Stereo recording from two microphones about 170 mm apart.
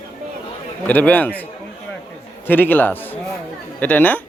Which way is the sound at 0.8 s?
10° left (ahead or behind).